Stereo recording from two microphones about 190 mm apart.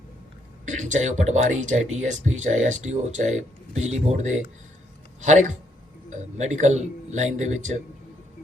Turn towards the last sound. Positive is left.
turn(degrees=-40)  # may be behind; listen again after turning